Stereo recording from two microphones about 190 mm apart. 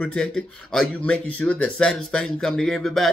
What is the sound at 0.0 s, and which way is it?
Speech, 5° left (ahead or behind).